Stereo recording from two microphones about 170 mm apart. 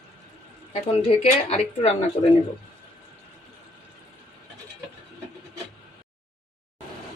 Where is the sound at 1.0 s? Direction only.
40° left (ahead or behind).